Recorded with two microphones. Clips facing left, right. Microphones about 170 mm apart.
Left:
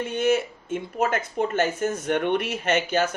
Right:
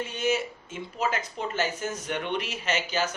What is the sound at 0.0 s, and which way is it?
Speech, 55° left (ahead or behind).